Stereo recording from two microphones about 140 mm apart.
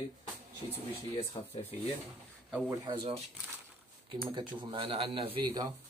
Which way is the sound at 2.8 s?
45° right (ahead or behind).